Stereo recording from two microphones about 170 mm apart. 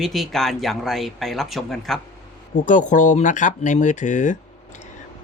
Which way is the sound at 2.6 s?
45° left (ahead or behind).